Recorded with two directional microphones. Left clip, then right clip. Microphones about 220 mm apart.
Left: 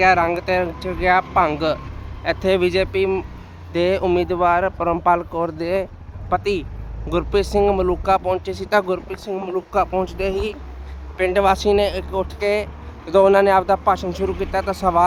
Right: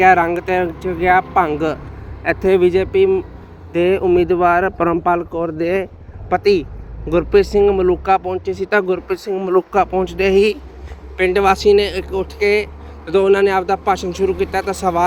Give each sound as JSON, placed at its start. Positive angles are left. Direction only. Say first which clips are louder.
{"t": 0.0, "sound": "speech", "louder": "right 4 dB", "side_deg": -10}
{"t": 7.6, "sound": "speech", "louder": "right 4 dB", "side_deg": 10}
{"t": 7.9, "sound": "speech", "louder": "right 3 dB", "side_deg": 0}
{"t": 9.0, "sound": "speech", "louder": "right 7 dB", "side_deg": -20}
{"t": 11.2, "sound": "speech", "louder": "right 3 dB", "side_deg": 0}